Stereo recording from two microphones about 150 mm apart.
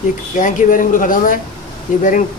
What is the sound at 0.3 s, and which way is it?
Speech, 60° left (ahead or behind).